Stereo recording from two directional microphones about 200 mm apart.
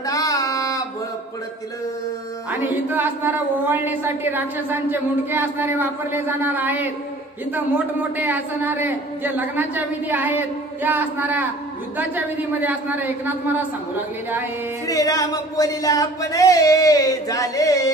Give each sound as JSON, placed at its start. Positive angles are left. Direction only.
{"t": 0.0, "sound": "a sound", "side_deg": 15}
{"t": 2.5, "sound": "a woman's voice", "side_deg": -10}
{"t": 8.2, "sound": "a woman's voice", "side_deg": -10}
{"t": 14.9, "sound": "speech", "side_deg": 15}